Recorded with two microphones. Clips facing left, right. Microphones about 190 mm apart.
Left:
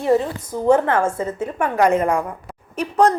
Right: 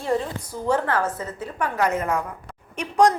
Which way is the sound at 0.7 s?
25° left (ahead or behind).